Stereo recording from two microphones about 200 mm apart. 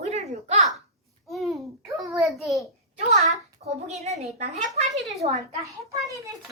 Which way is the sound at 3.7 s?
35° right (ahead or behind).